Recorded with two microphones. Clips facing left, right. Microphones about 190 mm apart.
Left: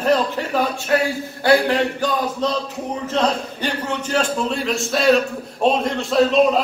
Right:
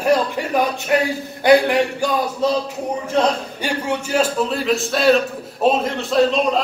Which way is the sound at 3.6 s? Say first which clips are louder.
Right 3 dB; 10° right (ahead or behind).